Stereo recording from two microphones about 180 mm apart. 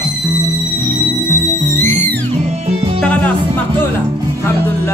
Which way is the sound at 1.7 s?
10° left (ahead or behind).